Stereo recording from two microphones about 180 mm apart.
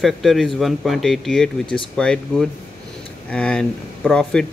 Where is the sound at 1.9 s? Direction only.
5° left (ahead or behind).